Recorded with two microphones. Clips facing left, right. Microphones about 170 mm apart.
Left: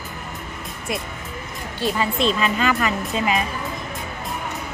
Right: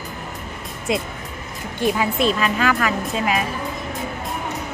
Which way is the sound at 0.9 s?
25° right (ahead or behind).